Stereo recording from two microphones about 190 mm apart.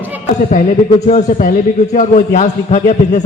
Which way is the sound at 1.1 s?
40° left (ahead or behind).